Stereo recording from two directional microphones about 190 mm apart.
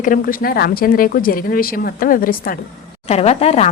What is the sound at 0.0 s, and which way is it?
A woman's voice, 45° left (ahead or behind).